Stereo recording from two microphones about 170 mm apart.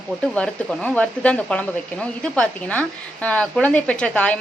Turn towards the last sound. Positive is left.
turn(degrees=5)  # may be behind; listen again after turning